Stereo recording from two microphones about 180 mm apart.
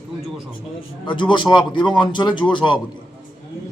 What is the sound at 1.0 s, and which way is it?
A man's voice, 25° left (ahead or behind).